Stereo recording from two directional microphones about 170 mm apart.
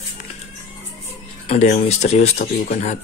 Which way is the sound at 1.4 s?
40° left (ahead or behind).